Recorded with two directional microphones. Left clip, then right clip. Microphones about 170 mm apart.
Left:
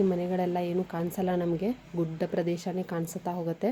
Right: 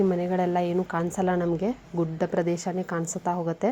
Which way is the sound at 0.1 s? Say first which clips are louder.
Right 4 dB; 5° right (ahead or behind).